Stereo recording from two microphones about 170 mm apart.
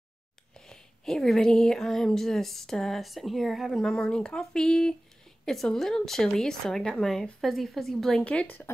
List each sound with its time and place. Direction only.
0.6 s speech: 5° left (ahead or behind)